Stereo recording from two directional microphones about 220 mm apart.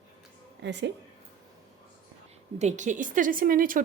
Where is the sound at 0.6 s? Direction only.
50° right (ahead or behind).